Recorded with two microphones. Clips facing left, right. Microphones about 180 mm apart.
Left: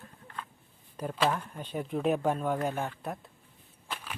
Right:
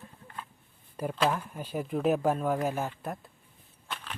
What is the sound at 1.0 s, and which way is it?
Speech, 5° right (ahead or behind).